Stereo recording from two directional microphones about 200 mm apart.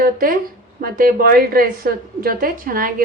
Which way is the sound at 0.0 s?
45° right (ahead or behind).